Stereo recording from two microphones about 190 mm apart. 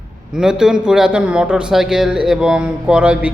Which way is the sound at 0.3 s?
5° right (ahead or behind).